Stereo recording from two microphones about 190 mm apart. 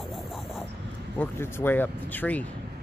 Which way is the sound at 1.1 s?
10° left (ahead or behind).